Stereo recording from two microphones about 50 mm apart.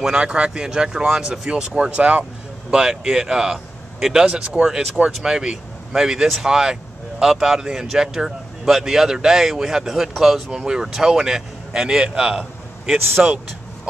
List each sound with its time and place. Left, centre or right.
0.0 s speech: centre